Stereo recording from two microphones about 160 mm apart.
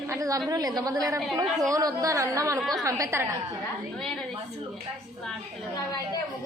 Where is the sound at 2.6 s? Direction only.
Centre (ahead or behind).